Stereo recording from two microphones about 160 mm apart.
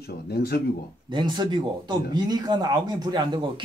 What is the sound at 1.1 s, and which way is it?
Speech, 30° right (ahead or behind).